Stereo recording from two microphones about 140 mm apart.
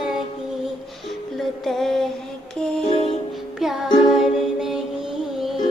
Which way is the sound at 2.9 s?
40° left (ahead or behind).